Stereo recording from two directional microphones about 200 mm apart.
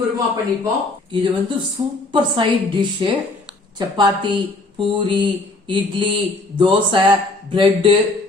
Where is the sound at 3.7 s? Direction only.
20° right (ahead or behind).